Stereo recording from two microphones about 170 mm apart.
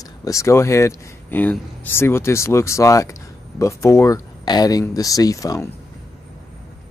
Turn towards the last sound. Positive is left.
turn(degrees=20)  # may be behind; listen again after turning